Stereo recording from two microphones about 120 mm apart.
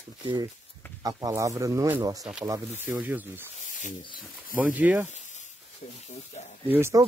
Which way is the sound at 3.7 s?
90° left.